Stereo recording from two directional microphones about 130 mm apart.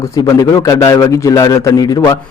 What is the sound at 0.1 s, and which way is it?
A man's voice, 25° left (ahead or behind).